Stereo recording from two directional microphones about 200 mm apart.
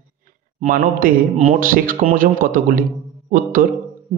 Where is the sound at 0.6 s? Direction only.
40° right (ahead or behind).